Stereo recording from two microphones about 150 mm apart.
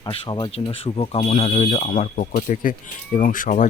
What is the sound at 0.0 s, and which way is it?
Speech, 30° left (ahead or behind).